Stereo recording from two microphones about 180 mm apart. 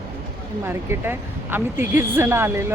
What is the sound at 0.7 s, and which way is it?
Speech, 15° right (ahead or behind).